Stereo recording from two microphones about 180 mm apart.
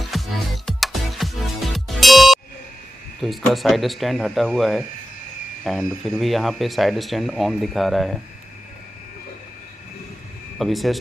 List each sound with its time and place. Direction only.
0.0 s music: centre (ahead or behind)
3.2 s speech: centre (ahead or behind)
10.6 s speech: centre (ahead or behind)